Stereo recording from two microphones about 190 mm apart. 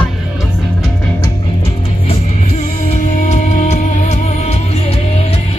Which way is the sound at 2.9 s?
35° left (ahead or behind).